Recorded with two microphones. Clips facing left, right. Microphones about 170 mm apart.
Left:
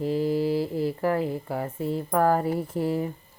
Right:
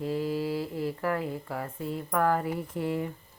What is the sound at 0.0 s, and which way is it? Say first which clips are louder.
Speech: left 5 dB; 30° left (ahead or behind).